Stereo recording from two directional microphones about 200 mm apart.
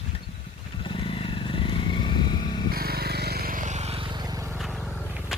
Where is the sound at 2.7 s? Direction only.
50° right (ahead or behind); by 4.5 s 15° right (ahead or behind).